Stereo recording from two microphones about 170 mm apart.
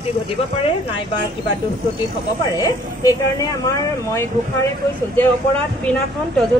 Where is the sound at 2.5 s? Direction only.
20° left (ahead or behind).